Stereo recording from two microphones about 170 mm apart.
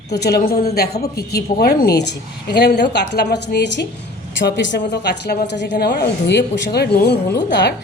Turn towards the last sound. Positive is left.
turn(degrees=90)